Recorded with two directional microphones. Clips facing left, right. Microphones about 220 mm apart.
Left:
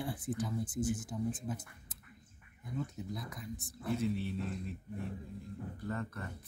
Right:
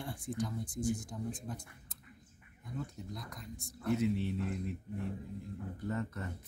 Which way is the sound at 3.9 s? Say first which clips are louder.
Right 1 dB; 15° right (ahead or behind).